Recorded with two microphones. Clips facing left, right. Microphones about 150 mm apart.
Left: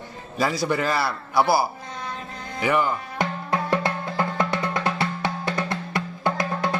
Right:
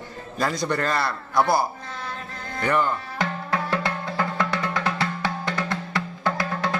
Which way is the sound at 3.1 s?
20° left (ahead or behind).